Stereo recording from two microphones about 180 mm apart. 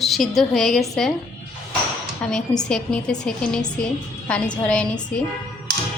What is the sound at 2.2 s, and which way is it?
A woman's voice, 5° left (ahead or behind).